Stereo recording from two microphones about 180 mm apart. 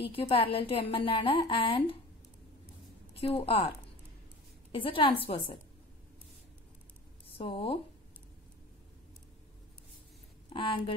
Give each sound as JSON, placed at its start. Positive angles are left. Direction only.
{"t": 0.0, "sound": "a woman's voice", "side_deg": 30}
{"t": 3.2, "sound": "a woman's voice", "side_deg": 30}
{"t": 4.7, "sound": "a woman's voice", "side_deg": 30}
{"t": 7.3, "sound": "a woman's voice", "side_deg": 30}
{"t": 10.5, "sound": "a woman's voice", "side_deg": 30}